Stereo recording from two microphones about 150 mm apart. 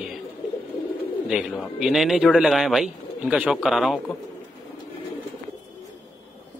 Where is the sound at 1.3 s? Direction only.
Centre (ahead or behind).